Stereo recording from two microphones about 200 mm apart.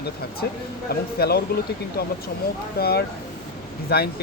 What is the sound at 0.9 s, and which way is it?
Speech, 50° left (ahead or behind).